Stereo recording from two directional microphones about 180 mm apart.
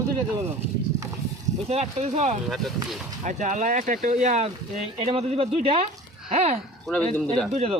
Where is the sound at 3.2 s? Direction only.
45° right (ahead or behind).